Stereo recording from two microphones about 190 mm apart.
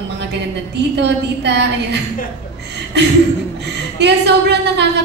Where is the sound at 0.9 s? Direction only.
65° right (ahead or behind).